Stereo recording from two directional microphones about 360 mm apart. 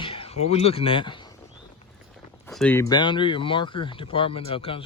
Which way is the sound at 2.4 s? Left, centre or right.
Centre.